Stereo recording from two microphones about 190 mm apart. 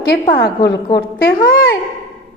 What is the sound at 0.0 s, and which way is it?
Speech, 55° left (ahead or behind).